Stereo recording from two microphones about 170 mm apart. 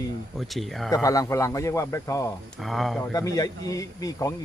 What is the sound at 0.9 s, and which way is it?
Speech, 20° left (ahead or behind).